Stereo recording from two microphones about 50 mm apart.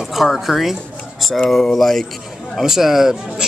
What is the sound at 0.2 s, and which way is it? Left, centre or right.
Speech, centre.